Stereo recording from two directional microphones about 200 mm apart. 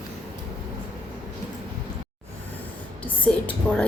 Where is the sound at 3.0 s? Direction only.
5° left (ahead or behind).